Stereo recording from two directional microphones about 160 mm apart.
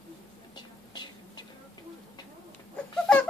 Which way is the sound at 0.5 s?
25° left (ahead or behind).